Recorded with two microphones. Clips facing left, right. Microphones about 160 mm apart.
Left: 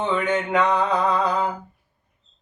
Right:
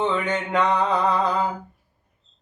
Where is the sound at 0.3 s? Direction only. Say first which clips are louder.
Left 1 dB; centre (ahead or behind).